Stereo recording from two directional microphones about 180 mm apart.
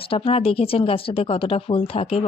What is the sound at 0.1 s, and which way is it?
Speech, 30° left (ahead or behind).